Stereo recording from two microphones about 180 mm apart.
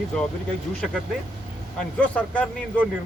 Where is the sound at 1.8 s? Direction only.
5° left (ahead or behind).